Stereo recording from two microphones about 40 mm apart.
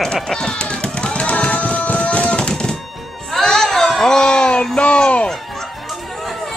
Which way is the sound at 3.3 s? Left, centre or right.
Centre.